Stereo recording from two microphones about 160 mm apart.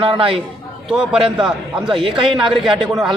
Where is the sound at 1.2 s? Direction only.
35° right (ahead or behind).